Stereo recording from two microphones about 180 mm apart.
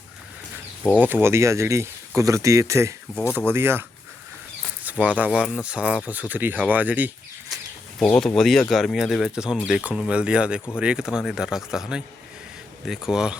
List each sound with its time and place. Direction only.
0.9 s speech: 10° right (ahead or behind)
8.0 s speech: 10° left (ahead or behind)